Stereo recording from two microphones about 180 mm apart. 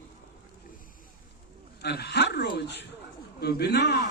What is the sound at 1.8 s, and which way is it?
A man's voice, 65° left (ahead or behind).